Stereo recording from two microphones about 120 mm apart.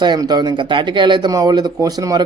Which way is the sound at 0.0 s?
35° right (ahead or behind).